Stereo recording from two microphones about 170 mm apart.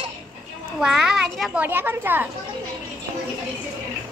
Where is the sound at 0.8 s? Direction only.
5° right (ahead or behind).